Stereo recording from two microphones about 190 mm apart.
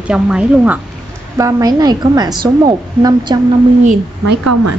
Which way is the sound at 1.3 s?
20° right (ahead or behind).